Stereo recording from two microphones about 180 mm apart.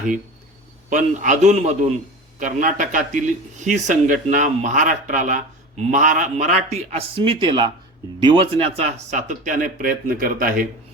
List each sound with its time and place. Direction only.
0.9 s speech: 45° right (ahead or behind)